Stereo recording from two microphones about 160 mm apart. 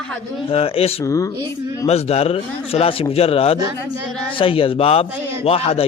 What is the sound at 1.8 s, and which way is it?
A man's voice, 40° left (ahead or behind).